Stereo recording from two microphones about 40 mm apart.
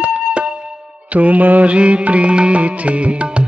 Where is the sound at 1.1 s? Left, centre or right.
Right.